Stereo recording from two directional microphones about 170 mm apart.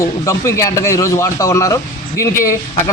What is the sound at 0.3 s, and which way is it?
Speech, 15° left (ahead or behind).